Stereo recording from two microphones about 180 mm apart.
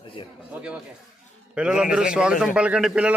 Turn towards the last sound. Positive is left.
turn(degrees=-5)  # may be behind; listen again after turning